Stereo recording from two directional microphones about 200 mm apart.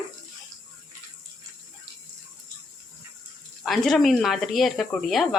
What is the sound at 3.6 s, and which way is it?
Speech, centre (ahead or behind).